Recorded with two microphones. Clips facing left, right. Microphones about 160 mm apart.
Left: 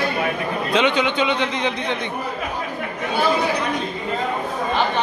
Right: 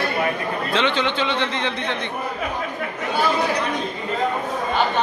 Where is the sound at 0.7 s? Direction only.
15° left (ahead or behind).